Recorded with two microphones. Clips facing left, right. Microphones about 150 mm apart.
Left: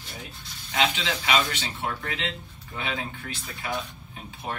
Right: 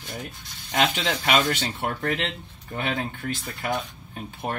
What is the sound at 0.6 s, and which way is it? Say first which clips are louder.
Speech: right 2 dB; 50° right (ahead or behind).